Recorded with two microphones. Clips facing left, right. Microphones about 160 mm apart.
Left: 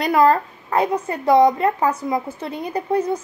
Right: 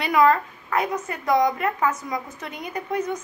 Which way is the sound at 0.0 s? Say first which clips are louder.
Left 3 dB; 35° left (ahead or behind).